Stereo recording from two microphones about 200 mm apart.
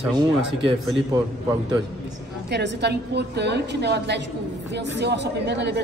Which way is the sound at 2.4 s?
55° right (ahead or behind).